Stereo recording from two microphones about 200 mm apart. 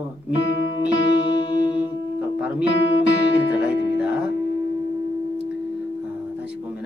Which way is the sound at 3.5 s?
5° right (ahead or behind).